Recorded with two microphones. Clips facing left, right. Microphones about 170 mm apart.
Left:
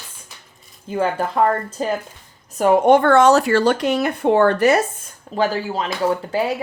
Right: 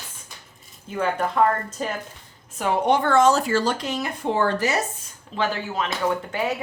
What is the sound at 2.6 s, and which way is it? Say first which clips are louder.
Speech: left 8 dB; 50° left (ahead or behind).